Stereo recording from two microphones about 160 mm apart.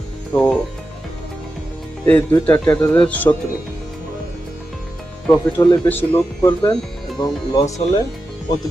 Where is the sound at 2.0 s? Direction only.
10° left (ahead or behind).